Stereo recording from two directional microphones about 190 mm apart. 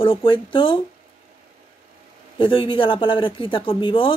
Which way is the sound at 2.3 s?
25° left (ahead or behind).